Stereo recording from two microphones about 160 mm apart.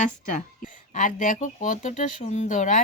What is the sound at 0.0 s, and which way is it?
Speech, 55° left (ahead or behind).